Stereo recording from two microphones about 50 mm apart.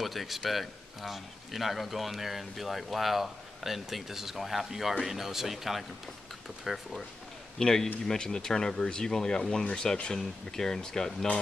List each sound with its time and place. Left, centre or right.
0.0 s a man's voice: centre
7.5 s speech: centre